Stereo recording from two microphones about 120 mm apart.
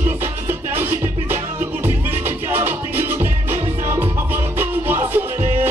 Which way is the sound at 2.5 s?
15° right (ahead or behind).